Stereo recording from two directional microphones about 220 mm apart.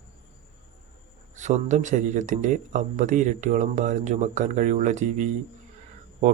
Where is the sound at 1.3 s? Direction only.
35° right (ahead or behind).